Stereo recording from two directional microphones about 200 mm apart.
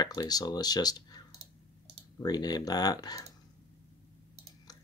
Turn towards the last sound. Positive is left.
turn(degrees=20)  # may be behind; listen again after turning